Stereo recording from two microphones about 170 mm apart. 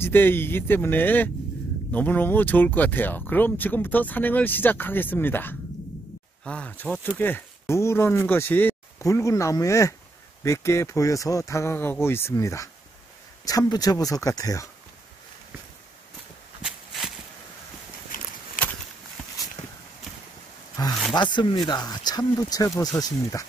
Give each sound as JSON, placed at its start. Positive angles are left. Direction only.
{"t": 0.0, "sound": "speech", "side_deg": 10}
{"t": 16.6, "sound": "walk", "side_deg": 0}
{"t": 18.1, "sound": "a sound", "side_deg": 50}
{"t": 20.8, "sound": "speech", "side_deg": 20}